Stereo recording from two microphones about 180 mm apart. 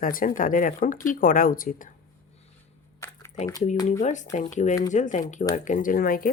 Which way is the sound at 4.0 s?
40° left (ahead or behind).